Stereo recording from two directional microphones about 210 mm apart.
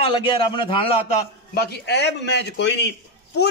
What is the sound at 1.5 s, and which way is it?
A man's voice, 55° left (ahead or behind).